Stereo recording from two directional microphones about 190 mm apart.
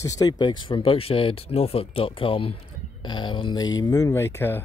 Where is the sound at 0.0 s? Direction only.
20° left (ahead or behind).